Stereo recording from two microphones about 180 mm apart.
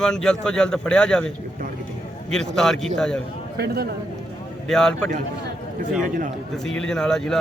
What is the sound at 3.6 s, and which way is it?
Speech, 65° right (ahead or behind).